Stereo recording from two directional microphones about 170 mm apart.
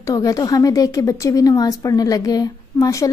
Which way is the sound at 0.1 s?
20° left (ahead or behind).